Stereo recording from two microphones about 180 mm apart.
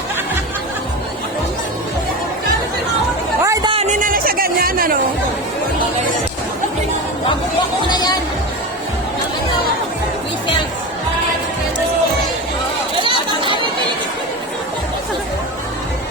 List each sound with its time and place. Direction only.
3.4 s a sound: 20° right (ahead or behind)
3.7 s music: 40° right (ahead or behind)
7.9 s music: 25° left (ahead or behind)
13.0 s chatter: 25° right (ahead or behind)